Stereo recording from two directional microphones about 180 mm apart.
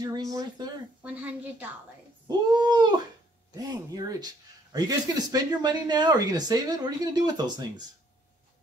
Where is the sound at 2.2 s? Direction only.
25° right (ahead or behind).